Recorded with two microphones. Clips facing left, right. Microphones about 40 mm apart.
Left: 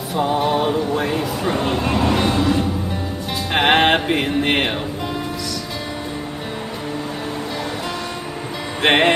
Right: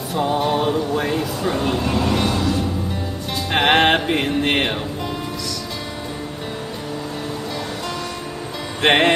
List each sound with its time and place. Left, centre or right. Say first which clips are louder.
0.1 s music: left 1 dB; centre
1.5 s speech: left 1 dB; centre
1.9 s vehicle: left 2 dB; centre
3.5 s music: even; centre
8.8 s music: even; centre